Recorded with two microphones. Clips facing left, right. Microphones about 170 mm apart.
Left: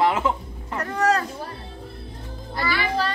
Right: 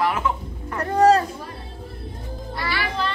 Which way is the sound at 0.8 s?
30° right (ahead or behind).